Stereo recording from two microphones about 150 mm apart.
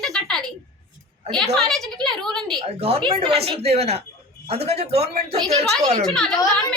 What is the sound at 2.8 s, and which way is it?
Speech, 40° right (ahead or behind).